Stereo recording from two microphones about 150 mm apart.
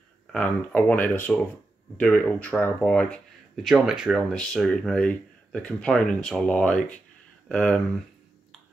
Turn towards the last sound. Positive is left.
turn(degrees=5)  # may be behind; listen again after turning